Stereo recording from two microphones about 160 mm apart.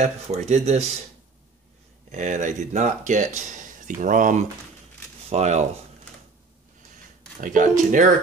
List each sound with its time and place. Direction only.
0.0 s speech: 45° right (ahead or behind)
2.0 s speech: 50° right (ahead or behind)
7.3 s speech: 55° right (ahead or behind)